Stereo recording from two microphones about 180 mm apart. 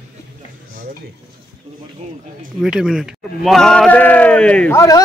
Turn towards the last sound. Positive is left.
turn(degrees=5)  # may be behind; listen again after turning